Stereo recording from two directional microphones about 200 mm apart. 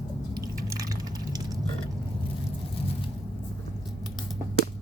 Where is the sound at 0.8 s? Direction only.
15° right (ahead or behind).